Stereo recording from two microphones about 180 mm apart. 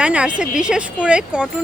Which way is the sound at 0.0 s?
5° right (ahead or behind).